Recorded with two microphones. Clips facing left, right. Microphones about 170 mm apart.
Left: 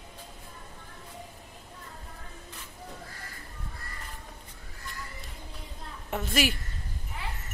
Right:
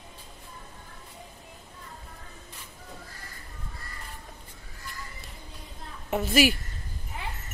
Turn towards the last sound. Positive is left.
turn(degrees=-5)  # may be behind; listen again after turning